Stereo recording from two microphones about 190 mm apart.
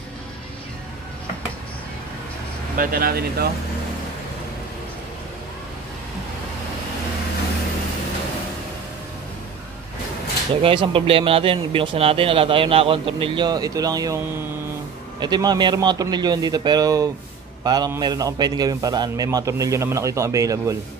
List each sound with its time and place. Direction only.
2.8 s speech: 50° right (ahead or behind)
10.5 s a man's voice: 25° right (ahead or behind)